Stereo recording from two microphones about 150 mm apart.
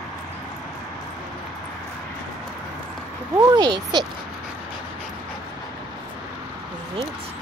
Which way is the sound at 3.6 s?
30° right (ahead or behind).